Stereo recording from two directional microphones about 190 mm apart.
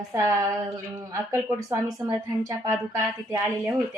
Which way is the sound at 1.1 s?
20° right (ahead or behind).